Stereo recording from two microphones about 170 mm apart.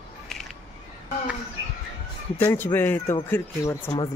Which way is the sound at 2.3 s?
10° left (ahead or behind).